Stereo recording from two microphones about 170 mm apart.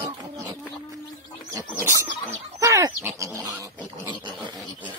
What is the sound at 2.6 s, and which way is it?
Pig, 20° right (ahead or behind).